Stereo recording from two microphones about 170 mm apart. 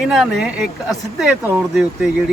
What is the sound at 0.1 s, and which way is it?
Speech, 5° right (ahead or behind).